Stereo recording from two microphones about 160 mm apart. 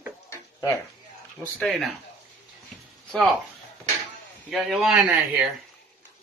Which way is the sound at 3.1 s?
5° left (ahead or behind).